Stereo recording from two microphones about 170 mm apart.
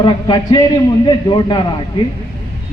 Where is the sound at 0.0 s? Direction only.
25° left (ahead or behind).